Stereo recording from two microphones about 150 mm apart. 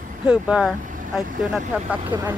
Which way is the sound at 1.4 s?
10° right (ahead or behind).